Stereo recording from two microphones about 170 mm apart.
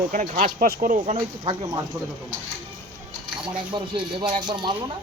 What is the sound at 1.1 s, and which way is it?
Speech, 25° right (ahead or behind).